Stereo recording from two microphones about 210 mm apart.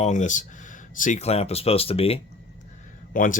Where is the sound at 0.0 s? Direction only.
35° left (ahead or behind).